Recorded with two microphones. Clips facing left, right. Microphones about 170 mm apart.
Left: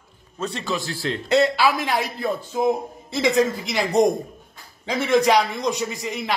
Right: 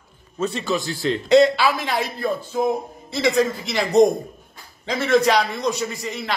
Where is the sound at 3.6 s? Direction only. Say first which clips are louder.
Right 3 dB; 10° left (ahead or behind).